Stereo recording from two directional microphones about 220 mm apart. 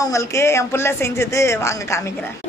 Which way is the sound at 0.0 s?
15° left (ahead or behind).